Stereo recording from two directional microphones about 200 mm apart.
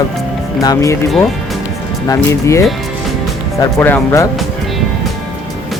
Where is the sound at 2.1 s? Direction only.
15° left (ahead or behind).